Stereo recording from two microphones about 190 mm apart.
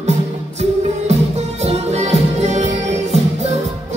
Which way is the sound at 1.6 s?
35° right (ahead or behind).